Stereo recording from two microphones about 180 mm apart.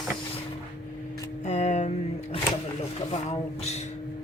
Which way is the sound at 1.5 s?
40° left (ahead or behind).